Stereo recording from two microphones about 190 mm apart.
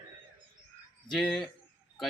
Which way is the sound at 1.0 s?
Centre (ahead or behind).